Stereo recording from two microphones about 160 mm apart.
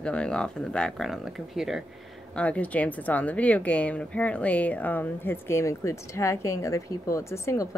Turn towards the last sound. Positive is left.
turn(degrees=20)  # may be behind; listen again after turning